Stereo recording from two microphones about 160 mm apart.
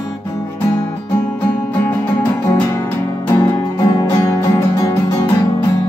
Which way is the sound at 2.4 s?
20° left (ahead or behind).